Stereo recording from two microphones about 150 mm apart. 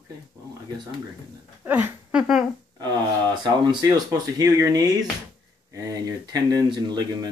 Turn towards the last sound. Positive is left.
turn(degrees=-30)  # may be behind; listen again after turning